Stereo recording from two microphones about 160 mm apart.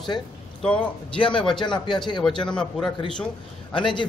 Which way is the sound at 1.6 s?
30° left (ahead or behind).